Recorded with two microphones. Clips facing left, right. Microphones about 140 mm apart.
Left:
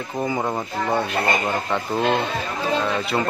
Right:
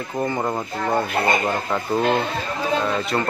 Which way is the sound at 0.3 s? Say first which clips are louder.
Even; centre (ahead or behind).